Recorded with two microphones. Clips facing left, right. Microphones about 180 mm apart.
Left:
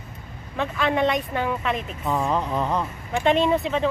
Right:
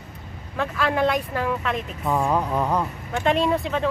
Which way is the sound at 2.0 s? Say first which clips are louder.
Right 2 dB; 10° right (ahead or behind).